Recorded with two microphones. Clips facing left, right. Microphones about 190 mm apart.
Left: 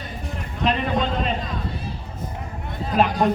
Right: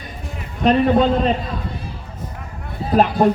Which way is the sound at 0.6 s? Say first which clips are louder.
Right 8 dB; 40° right (ahead or behind).